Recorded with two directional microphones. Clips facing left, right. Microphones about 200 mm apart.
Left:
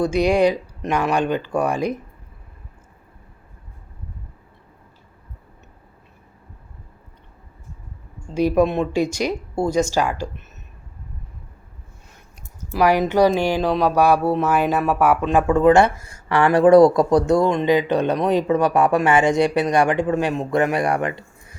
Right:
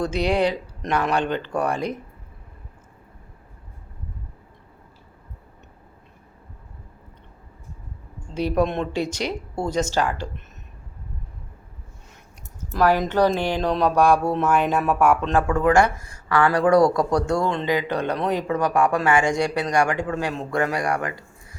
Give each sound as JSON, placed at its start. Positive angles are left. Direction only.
{"t": 0.0, "sound": "speech", "side_deg": 10}
{"t": 8.3, "sound": "speech", "side_deg": 10}
{"t": 12.7, "sound": "speech", "side_deg": 10}